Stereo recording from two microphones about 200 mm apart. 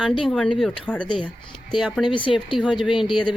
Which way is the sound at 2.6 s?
Centre (ahead or behind).